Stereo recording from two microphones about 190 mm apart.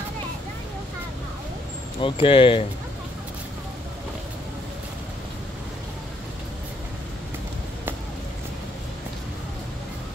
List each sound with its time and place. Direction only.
2.0 s speech: 25° left (ahead or behind)